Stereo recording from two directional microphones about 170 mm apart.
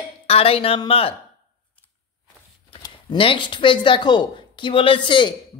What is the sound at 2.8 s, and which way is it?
Speech, 30° left (ahead or behind).